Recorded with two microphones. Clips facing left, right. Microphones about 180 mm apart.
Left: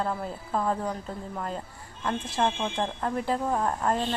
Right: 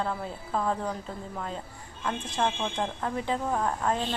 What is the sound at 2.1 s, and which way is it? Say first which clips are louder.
A woman's voice: left 2 dB; 5° left (ahead or behind).